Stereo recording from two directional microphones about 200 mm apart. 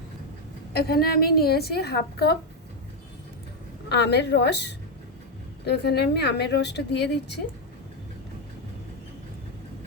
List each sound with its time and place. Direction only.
0.7 s a woman's voice: 50° left (ahead or behind)
3.8 s a woman's voice: 55° left (ahead or behind)